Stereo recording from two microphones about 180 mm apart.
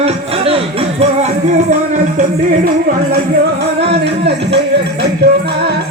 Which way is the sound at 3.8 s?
70° right (ahead or behind).